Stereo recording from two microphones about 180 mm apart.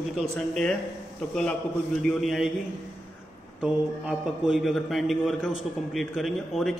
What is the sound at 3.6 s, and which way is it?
A man's voice, 5° right (ahead or behind).